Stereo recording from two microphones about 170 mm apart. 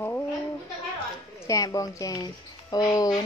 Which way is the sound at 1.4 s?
20° left (ahead or behind).